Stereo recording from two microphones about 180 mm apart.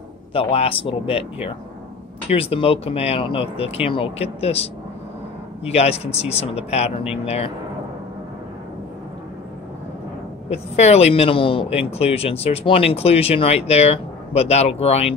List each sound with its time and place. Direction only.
0.3 s speech: 30° left (ahead or behind)
10.5 s speech: 35° left (ahead or behind)